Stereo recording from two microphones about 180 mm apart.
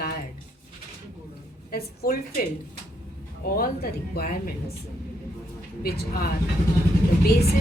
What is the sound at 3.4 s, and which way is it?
Speech, 55° left (ahead or behind).